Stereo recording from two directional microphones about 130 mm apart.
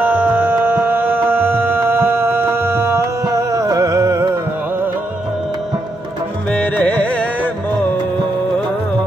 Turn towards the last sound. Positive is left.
turn(degrees=10)  # may be behind; listen again after turning